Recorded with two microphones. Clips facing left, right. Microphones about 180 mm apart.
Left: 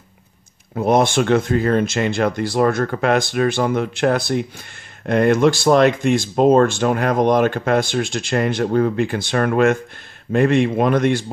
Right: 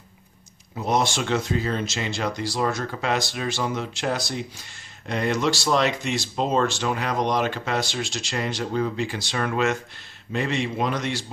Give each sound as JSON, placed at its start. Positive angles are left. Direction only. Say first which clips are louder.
{"t": 0.7, "sound": "speech", "louder": "left 8 dB", "side_deg": 55}